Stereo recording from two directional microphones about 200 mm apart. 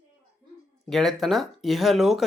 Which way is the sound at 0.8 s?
Centre (ahead or behind).